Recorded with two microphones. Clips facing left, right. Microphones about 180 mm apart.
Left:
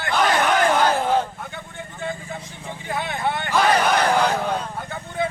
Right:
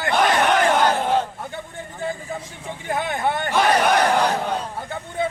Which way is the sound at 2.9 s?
50° right (ahead or behind).